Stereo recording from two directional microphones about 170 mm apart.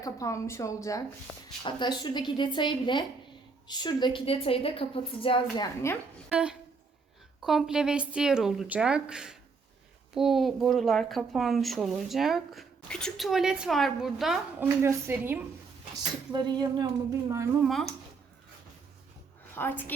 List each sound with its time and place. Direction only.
0.0 s a woman's voice: 20° left (ahead or behind)
5.8 s a woman's voice: 15° left (ahead or behind)
6.2 s speech: 5° right (ahead or behind)
14.8 s a woman's voice: 15° right (ahead or behind)
16.3 s a woman's voice: 25° right (ahead or behind)
17.6 s speech: centre (ahead or behind)
19.5 s a woman's voice: 10° left (ahead or behind)